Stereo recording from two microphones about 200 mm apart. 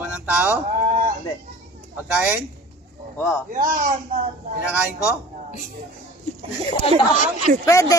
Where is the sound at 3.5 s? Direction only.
45° right (ahead or behind).